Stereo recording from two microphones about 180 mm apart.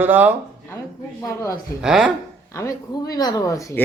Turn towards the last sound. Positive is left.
turn(degrees=20)  # may be behind; listen again after turning